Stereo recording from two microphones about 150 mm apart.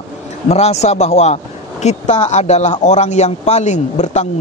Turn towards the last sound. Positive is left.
turn(degrees=50)  # may be behind; listen again after turning